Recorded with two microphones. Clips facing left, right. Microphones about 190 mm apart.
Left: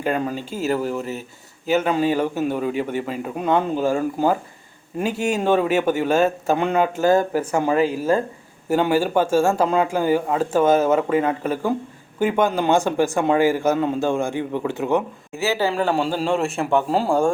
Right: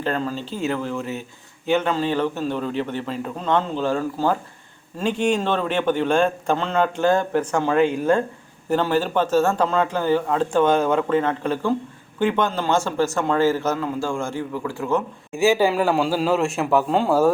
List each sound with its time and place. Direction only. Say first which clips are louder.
0.0 s speech: left 2 dB; 15° left (ahead or behind)
15.4 s speech: right 3 dB; 15° right (ahead or behind)